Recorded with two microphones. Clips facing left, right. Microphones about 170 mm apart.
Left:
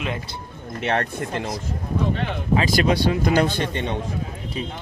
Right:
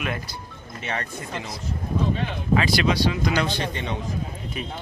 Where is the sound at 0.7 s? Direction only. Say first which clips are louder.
Left 8 dB; 60° left (ahead or behind).